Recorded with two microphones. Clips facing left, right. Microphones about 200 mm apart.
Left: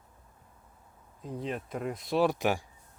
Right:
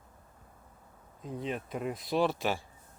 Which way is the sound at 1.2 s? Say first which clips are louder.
Left 1 dB; centre (ahead or behind).